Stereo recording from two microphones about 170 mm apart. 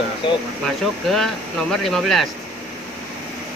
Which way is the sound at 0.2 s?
30° left (ahead or behind).